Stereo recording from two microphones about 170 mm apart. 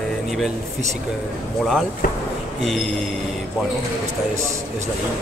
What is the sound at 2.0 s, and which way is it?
Speech, 55° left (ahead or behind).